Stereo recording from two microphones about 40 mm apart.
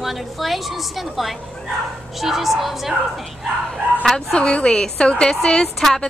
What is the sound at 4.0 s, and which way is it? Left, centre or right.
Speech, centre.